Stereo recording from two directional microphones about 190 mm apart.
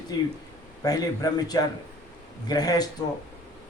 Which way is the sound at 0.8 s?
20° left (ahead or behind).